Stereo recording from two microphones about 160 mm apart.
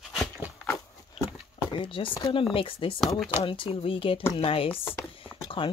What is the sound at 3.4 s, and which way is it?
A woman's voice, 35° left (ahead or behind).